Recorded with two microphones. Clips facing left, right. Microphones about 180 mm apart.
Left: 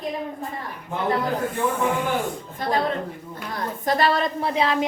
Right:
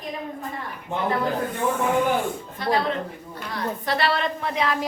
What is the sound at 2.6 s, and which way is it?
Speech, 45° left (ahead or behind).